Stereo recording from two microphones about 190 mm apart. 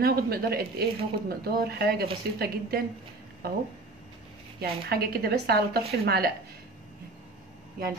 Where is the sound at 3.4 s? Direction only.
55° right (ahead or behind).